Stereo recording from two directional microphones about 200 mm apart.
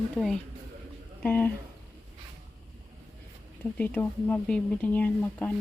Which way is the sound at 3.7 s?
10° left (ahead or behind).